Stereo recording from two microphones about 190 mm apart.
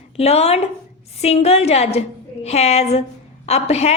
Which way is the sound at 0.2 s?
35° left (ahead or behind).